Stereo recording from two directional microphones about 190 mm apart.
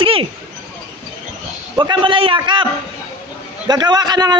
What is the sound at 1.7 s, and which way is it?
Speech, 25° right (ahead or behind).